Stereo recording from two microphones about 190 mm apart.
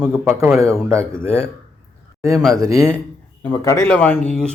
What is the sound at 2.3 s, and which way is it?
Speech, centre (ahead or behind).